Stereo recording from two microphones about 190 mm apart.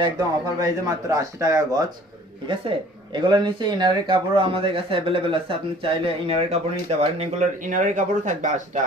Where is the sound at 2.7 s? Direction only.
30° right (ahead or behind).